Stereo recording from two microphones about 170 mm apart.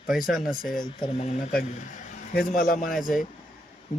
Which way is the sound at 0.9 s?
40° left (ahead or behind).